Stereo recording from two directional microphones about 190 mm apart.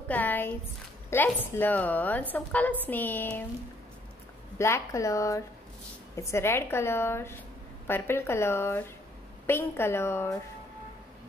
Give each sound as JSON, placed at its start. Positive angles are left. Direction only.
{"t": 0.1, "sound": "a woman's voice", "side_deg": 10}
{"t": 4.6, "sound": "a woman's voice", "side_deg": 15}